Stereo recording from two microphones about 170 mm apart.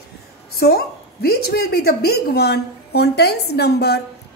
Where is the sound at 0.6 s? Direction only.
65° left (ahead or behind).